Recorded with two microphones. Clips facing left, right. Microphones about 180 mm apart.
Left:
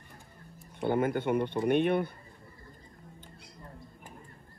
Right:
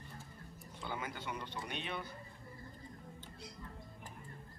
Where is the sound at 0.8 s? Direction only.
55° left (ahead or behind).